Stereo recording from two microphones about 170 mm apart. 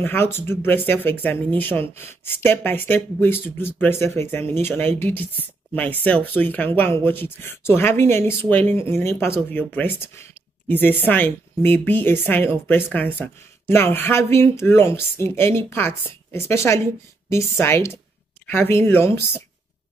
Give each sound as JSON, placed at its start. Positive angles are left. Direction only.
{"t": 0.0, "sound": "speech", "side_deg": 15}